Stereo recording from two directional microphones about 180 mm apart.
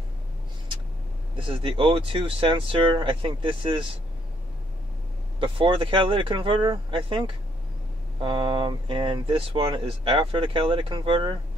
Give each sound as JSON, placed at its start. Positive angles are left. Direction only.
{"t": 1.3, "sound": "speech", "side_deg": -30}
{"t": 5.4, "sound": "speech", "side_deg": -30}